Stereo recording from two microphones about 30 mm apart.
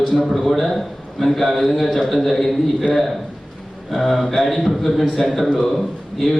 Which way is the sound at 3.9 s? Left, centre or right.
Centre.